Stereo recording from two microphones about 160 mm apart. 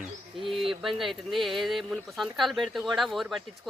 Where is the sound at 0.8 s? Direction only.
Centre (ahead or behind).